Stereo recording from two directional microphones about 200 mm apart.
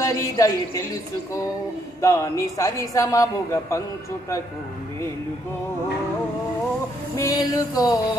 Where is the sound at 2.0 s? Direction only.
15° left (ahead or behind).